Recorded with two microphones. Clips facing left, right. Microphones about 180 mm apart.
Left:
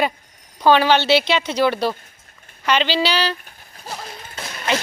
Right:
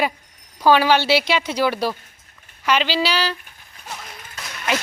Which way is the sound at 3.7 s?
30° left (ahead or behind).